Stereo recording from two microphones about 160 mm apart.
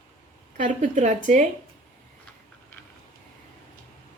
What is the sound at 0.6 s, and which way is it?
Speech, 50° right (ahead or behind).